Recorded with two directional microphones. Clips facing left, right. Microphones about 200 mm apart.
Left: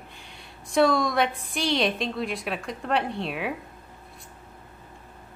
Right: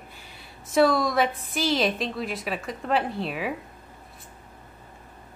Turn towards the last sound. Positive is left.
turn(degrees=0)  # may be behind; listen again after turning